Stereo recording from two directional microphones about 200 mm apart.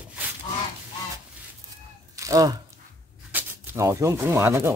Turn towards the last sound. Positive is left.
turn(degrees=-10)  # may be behind; listen again after turning